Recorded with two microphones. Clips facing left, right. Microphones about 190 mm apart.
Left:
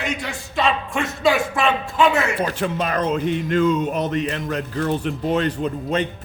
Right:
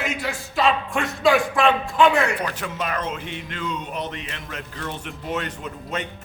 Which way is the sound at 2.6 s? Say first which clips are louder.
Left 6 dB; 35° left (ahead or behind).